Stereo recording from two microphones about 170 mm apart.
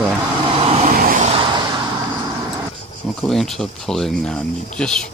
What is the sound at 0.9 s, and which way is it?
Vehicle, 55° right (ahead or behind).